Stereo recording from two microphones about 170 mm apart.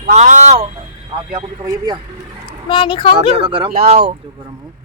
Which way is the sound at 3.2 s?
30° right (ahead or behind).